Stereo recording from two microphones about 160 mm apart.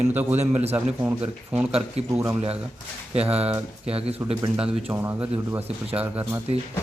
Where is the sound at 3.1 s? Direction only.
40° right (ahead or behind).